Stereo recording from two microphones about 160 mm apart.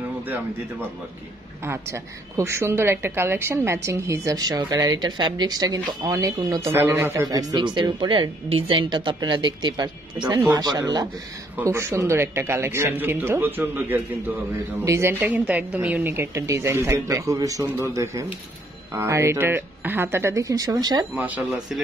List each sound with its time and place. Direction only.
1.6 s a woman's voice: 15° right (ahead or behind)
21.1 s speech: 10° right (ahead or behind)